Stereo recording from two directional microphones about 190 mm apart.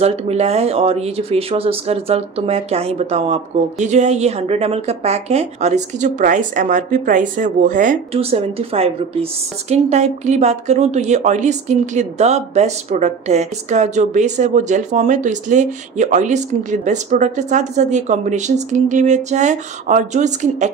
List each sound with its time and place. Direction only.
0.0 s speech: 35° right (ahead or behind)